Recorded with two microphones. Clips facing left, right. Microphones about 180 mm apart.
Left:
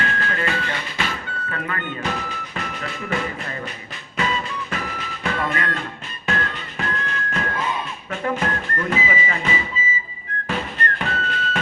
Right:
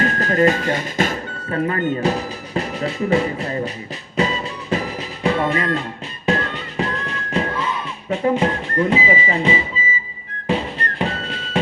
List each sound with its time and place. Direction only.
0.0 s speech: 40° right (ahead or behind)
4.2 s music: 35° right (ahead or behind)
8.1 s speech: 30° right (ahead or behind)
10.4 s music: 30° right (ahead or behind)